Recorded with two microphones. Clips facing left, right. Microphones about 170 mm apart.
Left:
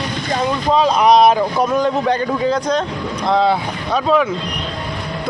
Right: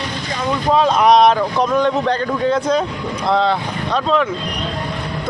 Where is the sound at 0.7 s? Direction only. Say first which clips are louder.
Even; centre (ahead or behind).